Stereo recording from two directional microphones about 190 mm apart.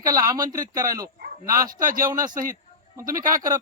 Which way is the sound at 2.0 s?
20° right (ahead or behind).